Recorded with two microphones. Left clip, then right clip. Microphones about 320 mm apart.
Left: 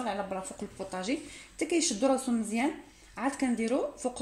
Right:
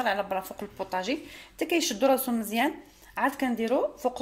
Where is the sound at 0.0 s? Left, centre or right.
Right.